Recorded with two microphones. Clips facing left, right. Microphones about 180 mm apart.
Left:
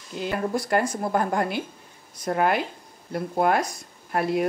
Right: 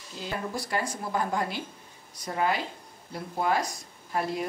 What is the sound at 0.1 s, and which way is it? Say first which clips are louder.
Speech: left 7 dB; 60° left (ahead or behind).